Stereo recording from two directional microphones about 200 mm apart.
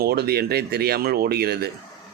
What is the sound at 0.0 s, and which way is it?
Speech, 50° right (ahead or behind).